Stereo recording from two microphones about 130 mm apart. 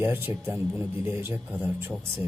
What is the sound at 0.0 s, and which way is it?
Speech, 15° right (ahead or behind).